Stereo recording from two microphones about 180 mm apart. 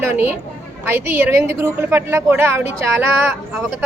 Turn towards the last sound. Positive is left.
turn(degrees=-15)  # may be behind; listen again after turning